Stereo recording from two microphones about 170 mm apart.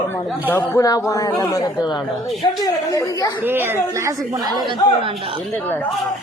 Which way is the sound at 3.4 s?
15° right (ahead or behind).